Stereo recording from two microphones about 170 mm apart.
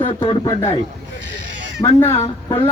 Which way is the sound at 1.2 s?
90° right.